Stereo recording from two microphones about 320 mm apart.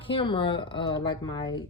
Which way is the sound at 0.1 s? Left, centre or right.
Centre.